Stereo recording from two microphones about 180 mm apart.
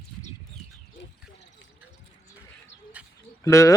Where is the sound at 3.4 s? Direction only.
15° left (ahead or behind).